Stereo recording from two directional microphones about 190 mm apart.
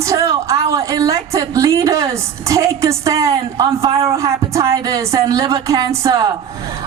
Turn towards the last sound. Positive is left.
turn(degrees=-20)  # may be behind; listen again after turning